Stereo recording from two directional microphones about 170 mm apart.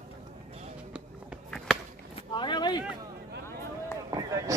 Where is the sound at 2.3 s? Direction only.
25° left (ahead or behind).